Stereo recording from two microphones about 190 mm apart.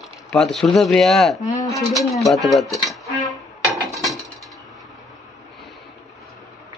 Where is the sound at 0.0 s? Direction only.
Centre (ahead or behind).